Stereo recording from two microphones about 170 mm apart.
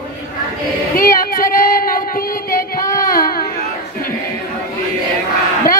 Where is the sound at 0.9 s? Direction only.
55° left (ahead or behind).